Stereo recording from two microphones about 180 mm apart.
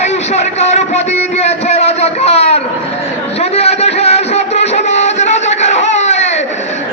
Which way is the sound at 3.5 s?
35° left (ahead or behind).